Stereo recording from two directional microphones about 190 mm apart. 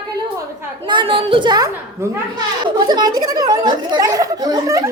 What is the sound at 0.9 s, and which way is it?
Speech, 25° right (ahead or behind).